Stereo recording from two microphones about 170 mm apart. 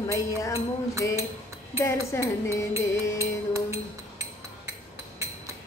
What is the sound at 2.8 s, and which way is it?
Music, 15° right (ahead or behind).